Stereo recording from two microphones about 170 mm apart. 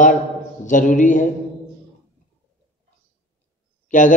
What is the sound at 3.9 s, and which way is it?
Mantra, 50° left (ahead or behind).